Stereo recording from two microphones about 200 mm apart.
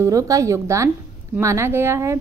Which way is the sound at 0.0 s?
15° right (ahead or behind).